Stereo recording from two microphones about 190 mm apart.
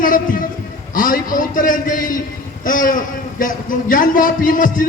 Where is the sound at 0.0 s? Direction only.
45° left (ahead or behind).